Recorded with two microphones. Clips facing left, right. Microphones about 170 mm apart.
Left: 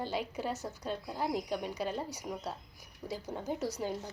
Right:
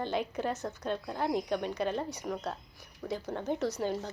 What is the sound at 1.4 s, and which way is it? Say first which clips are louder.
Speech: right 4 dB; 65° right (ahead or behind).